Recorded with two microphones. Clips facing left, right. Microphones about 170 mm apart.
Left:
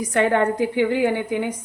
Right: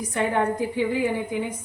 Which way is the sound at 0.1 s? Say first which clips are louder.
Left 4 dB; 75° left (ahead or behind).